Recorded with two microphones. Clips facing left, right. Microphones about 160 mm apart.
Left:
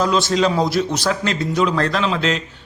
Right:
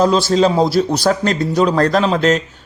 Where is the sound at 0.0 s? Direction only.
35° right (ahead or behind).